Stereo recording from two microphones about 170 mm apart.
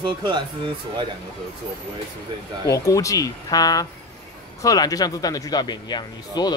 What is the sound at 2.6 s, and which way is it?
Speech, 20° left (ahead or behind).